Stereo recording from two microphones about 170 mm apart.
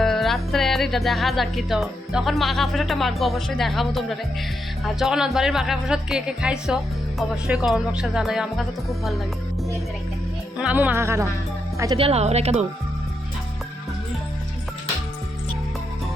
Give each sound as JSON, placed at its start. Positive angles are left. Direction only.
{"t": 0.0, "sound": "music", "side_deg": 0}
{"t": 10.6, "sound": "speech", "side_deg": -10}
{"t": 11.9, "sound": "a woman's voice", "side_deg": -35}